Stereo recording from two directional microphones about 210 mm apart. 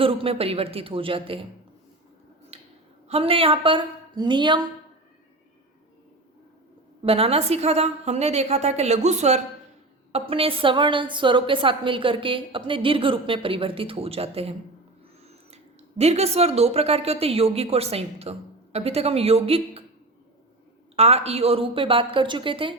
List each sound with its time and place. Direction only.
0.0 s a woman's voice: 25° right (ahead or behind)
2.5 s a sound: 30° right (ahead or behind)
3.1 s a woman's voice: 25° right (ahead or behind)
7.0 s a woman's voice: 25° right (ahead or behind)
20.9 s a woman's voice: 30° right (ahead or behind)